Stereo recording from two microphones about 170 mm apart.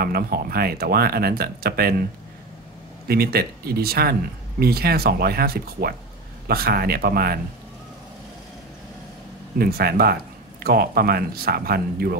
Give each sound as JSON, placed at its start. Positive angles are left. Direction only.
{"t": 0.0, "sound": "speech", "side_deg": -65}
{"t": 3.1, "sound": "speech", "side_deg": -65}
{"t": 9.6, "sound": "speech", "side_deg": -65}